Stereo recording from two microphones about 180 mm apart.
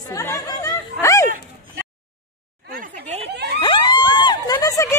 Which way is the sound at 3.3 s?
65° right (ahead or behind).